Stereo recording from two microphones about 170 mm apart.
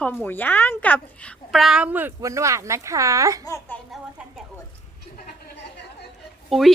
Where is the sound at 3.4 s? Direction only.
20° left (ahead or behind).